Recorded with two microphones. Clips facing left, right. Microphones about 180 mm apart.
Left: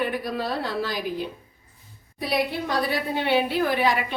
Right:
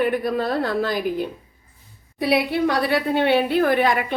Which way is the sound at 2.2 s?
70° right (ahead or behind).